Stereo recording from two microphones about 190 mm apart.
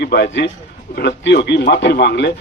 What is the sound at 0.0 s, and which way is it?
A man's voice, 60° left (ahead or behind).